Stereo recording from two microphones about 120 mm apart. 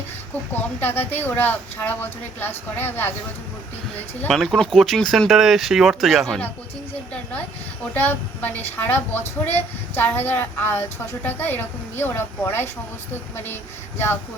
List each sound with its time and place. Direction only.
0.8 s a woman's voice: 15° left (ahead or behind)
4.3 s speech: centre (ahead or behind)
7.9 s a woman's voice: 15° left (ahead or behind)